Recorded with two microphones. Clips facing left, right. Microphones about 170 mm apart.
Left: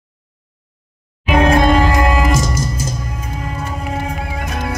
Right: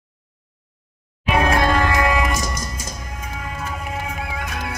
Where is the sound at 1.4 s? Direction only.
25° left (ahead or behind).